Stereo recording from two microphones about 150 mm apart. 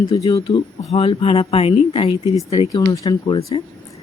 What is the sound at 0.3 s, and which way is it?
Speech, 40° left (ahead or behind).